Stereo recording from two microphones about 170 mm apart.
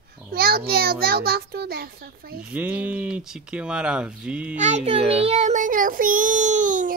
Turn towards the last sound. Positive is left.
turn(degrees=-50)  # may be behind; listen again after turning